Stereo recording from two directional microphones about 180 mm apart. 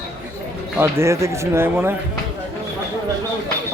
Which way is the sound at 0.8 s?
15° right (ahead or behind).